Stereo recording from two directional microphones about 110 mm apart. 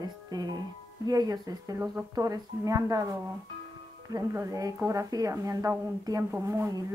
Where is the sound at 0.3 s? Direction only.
35° right (ahead or behind).